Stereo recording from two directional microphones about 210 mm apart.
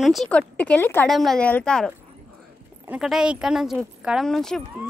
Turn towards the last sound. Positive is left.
turn(degrees=0)  # may be behind; listen again after turning